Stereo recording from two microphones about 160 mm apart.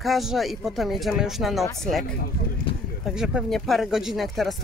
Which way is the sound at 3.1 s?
5° right (ahead or behind).